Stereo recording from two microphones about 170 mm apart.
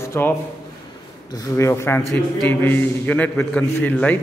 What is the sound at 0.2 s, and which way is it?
A man's voice, 15° left (ahead or behind).